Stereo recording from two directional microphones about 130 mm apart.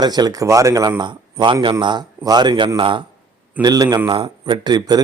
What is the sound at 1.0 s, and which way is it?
A man's voice, 35° right (ahead or behind).